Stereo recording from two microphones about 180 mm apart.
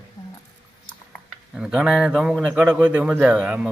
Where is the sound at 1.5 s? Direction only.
5° right (ahead or behind).